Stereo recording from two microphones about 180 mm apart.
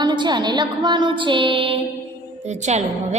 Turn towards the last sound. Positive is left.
turn(degrees=-40)  # may be behind; listen again after turning